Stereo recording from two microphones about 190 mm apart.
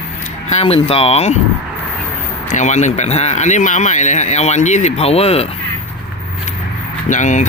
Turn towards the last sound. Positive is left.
turn(degrees=40)  # may be behind; listen again after turning